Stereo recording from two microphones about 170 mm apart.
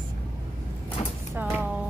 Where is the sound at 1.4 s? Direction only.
10° right (ahead or behind).